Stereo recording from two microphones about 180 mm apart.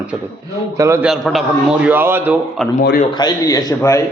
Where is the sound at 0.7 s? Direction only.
15° right (ahead or behind).